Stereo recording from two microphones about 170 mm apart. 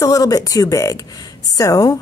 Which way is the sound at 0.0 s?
20° left (ahead or behind).